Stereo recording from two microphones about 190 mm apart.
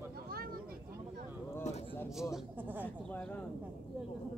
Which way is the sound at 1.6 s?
35° left (ahead or behind).